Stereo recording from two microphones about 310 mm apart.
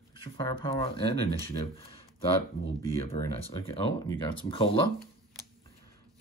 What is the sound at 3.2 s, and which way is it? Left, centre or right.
Speech, centre.